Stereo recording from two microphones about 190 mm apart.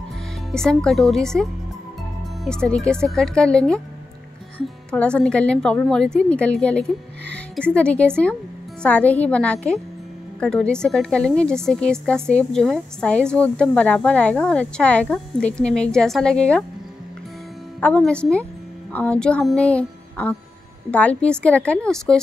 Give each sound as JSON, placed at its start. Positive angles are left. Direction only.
{"t": 0.5, "sound": "speech", "side_deg": 5}
{"t": 4.9, "sound": "a woman's voice", "side_deg": 5}
{"t": 17.7, "sound": "a woman's voice", "side_deg": 5}